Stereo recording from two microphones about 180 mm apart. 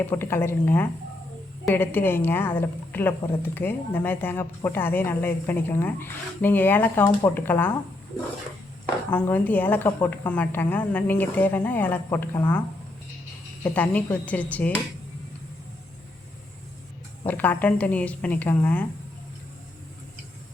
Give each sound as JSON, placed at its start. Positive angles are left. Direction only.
{"t": 0.0, "sound": "speech", "side_deg": 15}
{"t": 9.0, "sound": "speech", "side_deg": 10}
{"t": 13.7, "sound": "speech", "side_deg": 10}
{"t": 17.2, "sound": "speech", "side_deg": 10}